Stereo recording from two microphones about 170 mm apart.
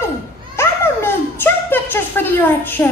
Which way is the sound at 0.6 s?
15° left (ahead or behind).